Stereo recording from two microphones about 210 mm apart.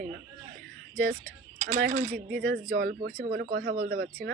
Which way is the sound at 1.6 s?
40° right (ahead or behind).